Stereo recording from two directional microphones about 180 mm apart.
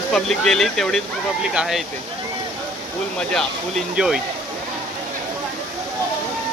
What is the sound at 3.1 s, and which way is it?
Speech, centre (ahead or behind).